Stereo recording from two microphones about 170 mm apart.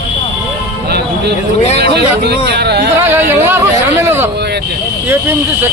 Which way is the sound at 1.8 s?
75° right (ahead or behind).